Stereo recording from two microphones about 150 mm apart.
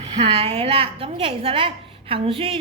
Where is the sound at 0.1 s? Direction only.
40° right (ahead or behind).